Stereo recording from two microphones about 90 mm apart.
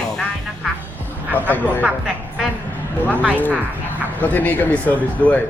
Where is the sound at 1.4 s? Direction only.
20° left (ahead or behind).